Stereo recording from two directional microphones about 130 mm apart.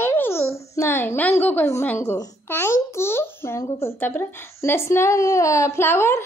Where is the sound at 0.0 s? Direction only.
15° left (ahead or behind).